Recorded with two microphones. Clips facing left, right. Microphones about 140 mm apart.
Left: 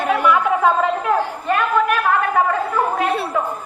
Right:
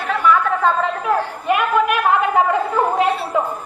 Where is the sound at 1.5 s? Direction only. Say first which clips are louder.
Right 2 dB; 15° right (ahead or behind).